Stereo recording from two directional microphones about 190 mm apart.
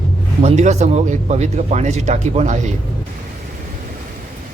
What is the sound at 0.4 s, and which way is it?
Speech, 35° right (ahead or behind).